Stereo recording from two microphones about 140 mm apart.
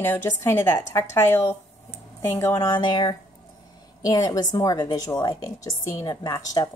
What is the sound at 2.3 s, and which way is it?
A woman's voice, 20° left (ahead or behind).